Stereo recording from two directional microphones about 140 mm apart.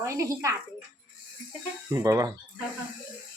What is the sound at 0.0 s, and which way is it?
Speech, 20° right (ahead or behind).